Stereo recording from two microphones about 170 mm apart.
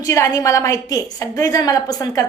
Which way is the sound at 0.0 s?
20° left (ahead or behind).